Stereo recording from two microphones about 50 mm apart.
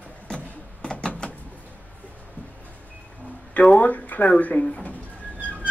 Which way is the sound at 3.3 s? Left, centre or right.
Left.